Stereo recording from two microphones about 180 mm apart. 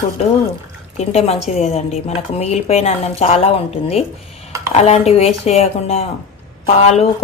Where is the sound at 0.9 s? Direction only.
35° left (ahead or behind).